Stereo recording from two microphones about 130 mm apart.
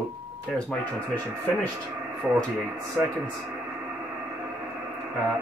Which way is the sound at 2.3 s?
10° right (ahead or behind).